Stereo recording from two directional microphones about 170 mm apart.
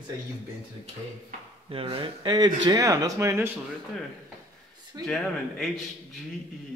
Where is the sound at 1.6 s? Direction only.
30° right (ahead or behind); by 3.5 s 15° right (ahead or behind).